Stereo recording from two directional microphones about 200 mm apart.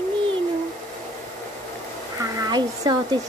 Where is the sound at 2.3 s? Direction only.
20° right (ahead or behind).